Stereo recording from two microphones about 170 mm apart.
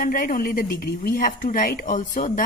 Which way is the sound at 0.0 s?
55° left (ahead or behind).